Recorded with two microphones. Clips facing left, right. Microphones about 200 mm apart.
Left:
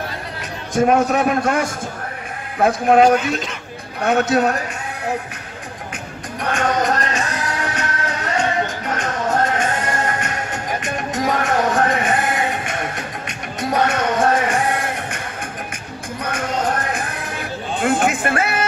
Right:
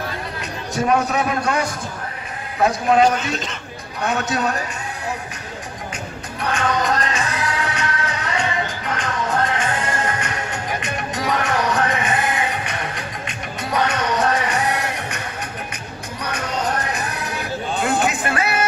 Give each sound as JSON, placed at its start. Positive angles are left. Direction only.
{"t": 0.7, "sound": "a man's voice", "side_deg": 50}
{"t": 3.2, "sound": "a man's voice", "side_deg": 10}
{"t": 4.0, "sound": "a man's voice", "side_deg": 55}
{"t": 6.4, "sound": "music", "side_deg": 50}
{"t": 17.8, "sound": "a sound", "side_deg": 50}